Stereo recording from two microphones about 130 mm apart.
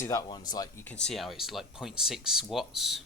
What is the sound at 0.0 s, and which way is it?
Speech, 25° left (ahead or behind).